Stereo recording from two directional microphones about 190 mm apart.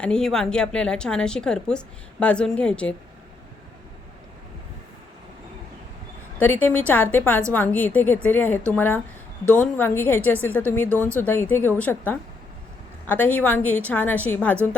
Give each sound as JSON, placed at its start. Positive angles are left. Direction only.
{"t": 0.0, "sound": "a woman's voice", "side_deg": 5}
{"t": 6.4, "sound": "a woman's voice", "side_deg": 10}